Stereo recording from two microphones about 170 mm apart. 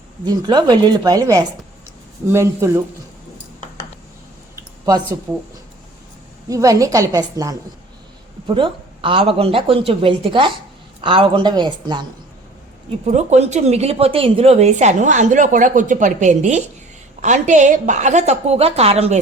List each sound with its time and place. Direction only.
0.3 s speech: 25° right (ahead or behind)
4.5 s a sound: 25° right (ahead or behind)
5.3 s speech: 20° right (ahead or behind)
6.5 s speech: 20° right (ahead or behind)
13.1 s speech: 45° right (ahead or behind)